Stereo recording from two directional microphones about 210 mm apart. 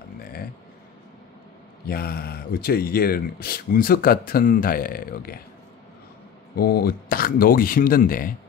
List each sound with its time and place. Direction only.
0.2 s a sound: 45° left (ahead or behind)
1.9 s speech: 45° left (ahead or behind)
6.5 s speech: 45° left (ahead or behind)